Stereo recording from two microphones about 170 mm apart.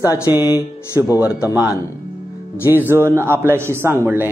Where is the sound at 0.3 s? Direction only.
15° right (ahead or behind).